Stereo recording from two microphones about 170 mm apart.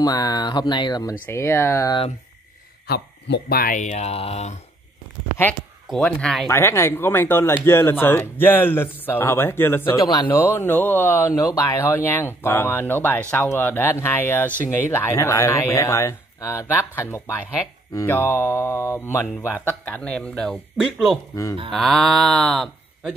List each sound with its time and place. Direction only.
0.0 s speech: 20° left (ahead or behind)
1.2 s speech: 15° left (ahead or behind)
2.9 s speech: 80° left; by 4.6 s 40° left (ahead or behind)
5.9 s livestock: 5° left (ahead or behind)
6.5 s speech: 15° left (ahead or behind)
10.0 s speech: 25° left (ahead or behind)
10.3 s speech: 15° left (ahead or behind)
20.7 s livestock: centre (ahead or behind)